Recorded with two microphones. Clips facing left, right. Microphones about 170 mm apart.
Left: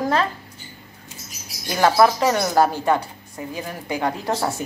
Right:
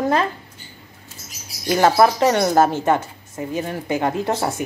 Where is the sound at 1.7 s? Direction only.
25° right (ahead or behind).